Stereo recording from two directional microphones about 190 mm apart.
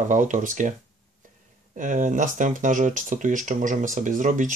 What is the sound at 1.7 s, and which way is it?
Speech, 40° right (ahead or behind).